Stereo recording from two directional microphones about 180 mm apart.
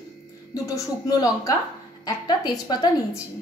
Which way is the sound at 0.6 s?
20° left (ahead or behind).